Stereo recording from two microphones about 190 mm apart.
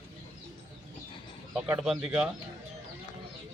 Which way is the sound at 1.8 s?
5° right (ahead or behind).